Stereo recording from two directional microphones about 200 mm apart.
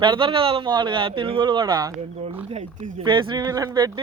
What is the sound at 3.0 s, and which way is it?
Speech, 25° right (ahead or behind).